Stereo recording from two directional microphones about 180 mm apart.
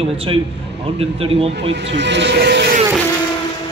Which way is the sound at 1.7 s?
75° right (ahead or behind).